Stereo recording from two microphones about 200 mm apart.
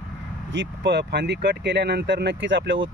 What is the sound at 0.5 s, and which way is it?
Speech, 65° right (ahead or behind).